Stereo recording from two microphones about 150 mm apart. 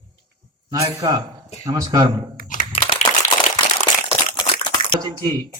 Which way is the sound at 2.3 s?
60° left (ahead or behind).